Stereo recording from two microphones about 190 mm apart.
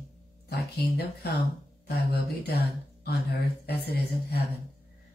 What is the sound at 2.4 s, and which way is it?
Speech, 60° left (ahead or behind).